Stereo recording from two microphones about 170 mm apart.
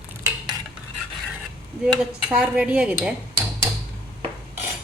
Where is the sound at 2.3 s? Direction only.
5° right (ahead or behind).